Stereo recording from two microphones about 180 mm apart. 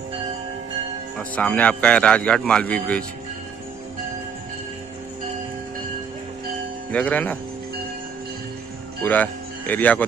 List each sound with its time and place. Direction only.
1.1 s speech: 5° left (ahead or behind)
6.9 s speech: 10° left (ahead or behind)
9.0 s speech: 10° left (ahead or behind)